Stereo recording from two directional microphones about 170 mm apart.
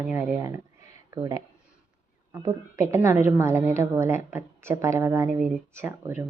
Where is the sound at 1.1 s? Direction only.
20° right (ahead or behind).